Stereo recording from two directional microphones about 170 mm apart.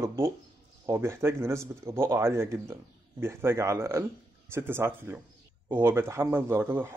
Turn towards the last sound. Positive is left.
turn(degrees=-15)  # may be behind; listen again after turning